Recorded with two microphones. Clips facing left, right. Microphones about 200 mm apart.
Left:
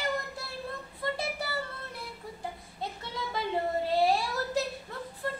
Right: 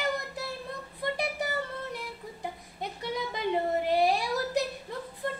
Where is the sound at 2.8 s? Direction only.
15° right (ahead or behind).